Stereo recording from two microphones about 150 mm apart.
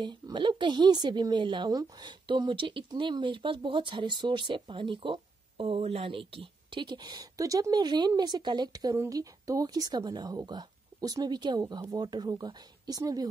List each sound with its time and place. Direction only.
0.0 s a woman's voice: 30° right (ahead or behind)